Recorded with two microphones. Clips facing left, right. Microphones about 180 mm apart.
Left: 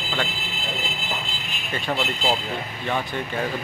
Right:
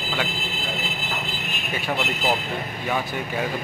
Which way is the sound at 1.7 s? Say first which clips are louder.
Left 1 dB; 5° right (ahead or behind).